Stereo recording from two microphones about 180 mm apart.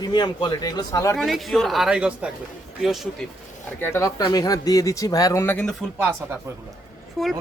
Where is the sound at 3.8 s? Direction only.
15° left (ahead or behind).